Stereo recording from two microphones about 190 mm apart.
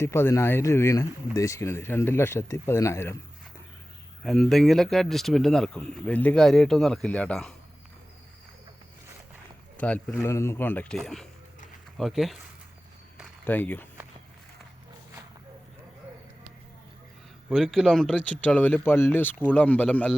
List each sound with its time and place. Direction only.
0.0 s speech: 15° left (ahead or behind)
4.2 s speech: centre (ahead or behind)
9.7 s speech: 5° left (ahead or behind)
13.4 s speech: 10° left (ahead or behind)
17.5 s speech: centre (ahead or behind)